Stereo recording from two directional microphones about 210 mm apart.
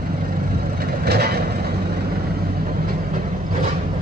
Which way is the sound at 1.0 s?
50° right (ahead or behind).